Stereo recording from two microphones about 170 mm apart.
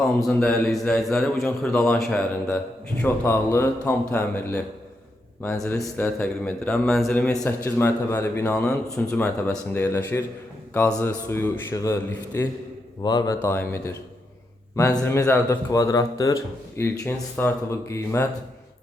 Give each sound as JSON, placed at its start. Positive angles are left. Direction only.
{"t": 0.2, "sound": "a man's voice", "side_deg": 5}